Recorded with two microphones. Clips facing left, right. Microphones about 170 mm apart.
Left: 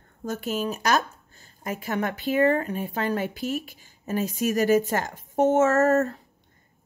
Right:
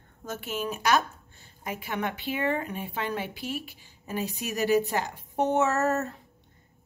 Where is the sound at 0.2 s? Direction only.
40° left (ahead or behind).